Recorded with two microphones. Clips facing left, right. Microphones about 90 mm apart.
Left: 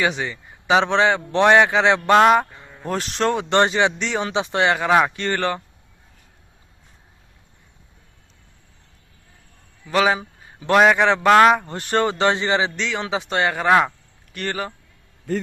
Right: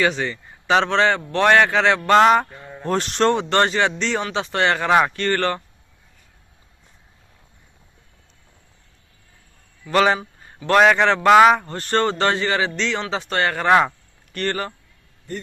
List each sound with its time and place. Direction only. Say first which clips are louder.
0.0 s a man's voice: right 2 dB; 15° left (ahead or behind)
2.0 s speech: right 1 dB; 5° left (ahead or behind)
3.5 s a man's voice: left 1 dB; 15° left (ahead or behind)
5.1 s a man's voice: right 2 dB; 15° left (ahead or behind)
9.8 s a man's voice: right 1 dB; 5° left (ahead or behind)
11.3 s speech: right 1 dB; centre (ahead or behind)
11.5 s a man's voice: even; 15° left (ahead or behind)